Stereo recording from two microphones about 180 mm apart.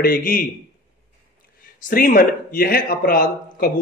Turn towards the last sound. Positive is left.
turn(degrees=55)  # may be behind; listen again after turning